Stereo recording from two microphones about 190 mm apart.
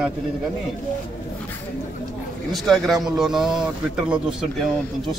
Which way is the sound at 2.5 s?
Centre (ahead or behind).